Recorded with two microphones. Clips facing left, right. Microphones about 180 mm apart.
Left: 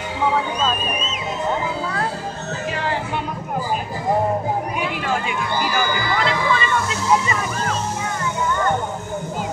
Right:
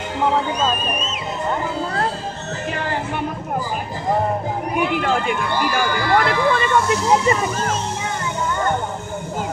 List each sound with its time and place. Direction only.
2.7 s music: 50° right (ahead or behind)
4.7 s run: 55° right (ahead or behind)